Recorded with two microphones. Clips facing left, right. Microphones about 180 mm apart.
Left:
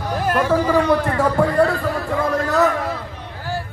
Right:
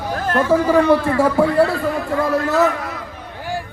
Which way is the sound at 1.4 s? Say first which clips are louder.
Right 1 dB; 5° right (ahead or behind).